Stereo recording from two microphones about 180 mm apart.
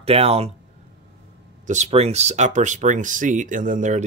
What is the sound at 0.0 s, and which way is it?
Speech, 35° right (ahead or behind).